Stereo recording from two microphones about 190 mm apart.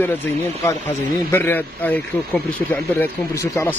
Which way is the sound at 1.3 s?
10° left (ahead or behind).